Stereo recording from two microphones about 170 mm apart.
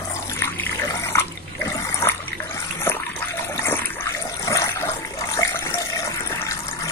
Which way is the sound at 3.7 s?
20° left (ahead or behind).